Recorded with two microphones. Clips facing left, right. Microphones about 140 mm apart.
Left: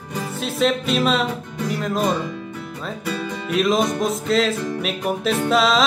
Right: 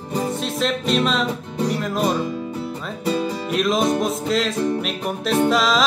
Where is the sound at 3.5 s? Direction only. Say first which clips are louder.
Left 1 dB; centre (ahead or behind).